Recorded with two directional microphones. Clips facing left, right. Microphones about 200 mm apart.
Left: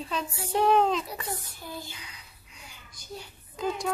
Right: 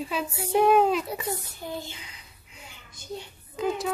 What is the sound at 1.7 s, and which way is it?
A child's voice, 25° right (ahead or behind).